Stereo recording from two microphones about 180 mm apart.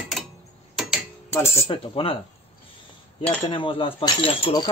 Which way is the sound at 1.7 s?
30° left (ahead or behind).